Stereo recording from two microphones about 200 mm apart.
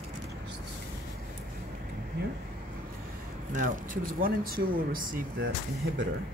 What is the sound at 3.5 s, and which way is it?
Speech, 40° right (ahead or behind).